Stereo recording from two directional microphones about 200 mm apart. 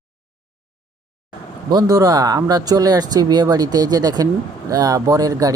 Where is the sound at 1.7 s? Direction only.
20° right (ahead or behind).